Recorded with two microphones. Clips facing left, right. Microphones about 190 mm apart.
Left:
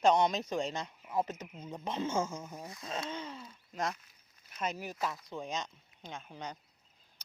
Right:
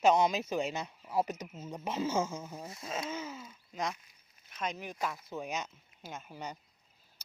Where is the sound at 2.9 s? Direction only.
5° right (ahead or behind).